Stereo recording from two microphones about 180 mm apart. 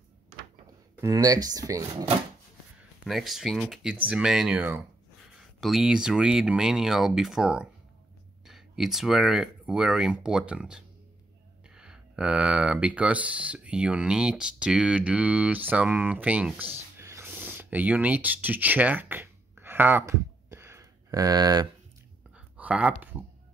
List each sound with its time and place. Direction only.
1.0 s speech: 20° right (ahead or behind)
3.0 s speech: centre (ahead or behind); by 21.6 s 20° right (ahead or behind)
22.3 s a sound: 5° right (ahead or behind)